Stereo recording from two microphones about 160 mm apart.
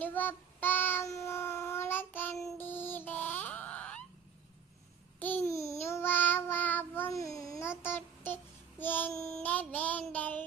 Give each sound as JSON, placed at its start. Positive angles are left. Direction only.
{"t": 0.0, "sound": "child singing", "side_deg": 10}
{"t": 2.6, "sound": "music", "side_deg": 15}
{"t": 5.2, "sound": "babbling", "side_deg": 10}
{"t": 5.8, "sound": "child singing", "side_deg": 15}